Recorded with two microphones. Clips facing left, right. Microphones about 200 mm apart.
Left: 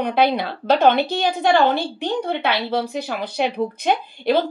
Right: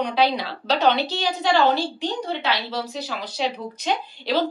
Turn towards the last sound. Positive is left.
turn(degrees=55)  # may be behind; listen again after turning